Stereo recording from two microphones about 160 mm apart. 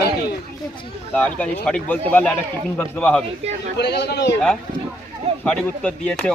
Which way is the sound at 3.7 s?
90° left.